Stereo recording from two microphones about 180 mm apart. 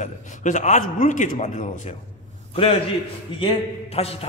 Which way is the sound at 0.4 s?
45° left (ahead or behind).